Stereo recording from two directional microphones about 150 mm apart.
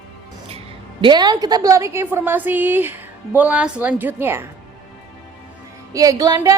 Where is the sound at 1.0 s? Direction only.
30° right (ahead or behind).